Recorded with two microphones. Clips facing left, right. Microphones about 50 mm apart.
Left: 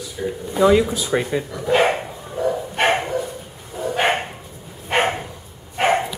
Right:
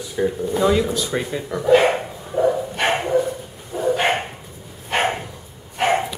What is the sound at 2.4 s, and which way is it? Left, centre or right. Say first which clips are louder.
Bow-wow: right 4 dB; right.